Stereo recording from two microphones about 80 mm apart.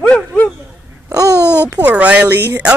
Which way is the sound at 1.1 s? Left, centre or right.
Right.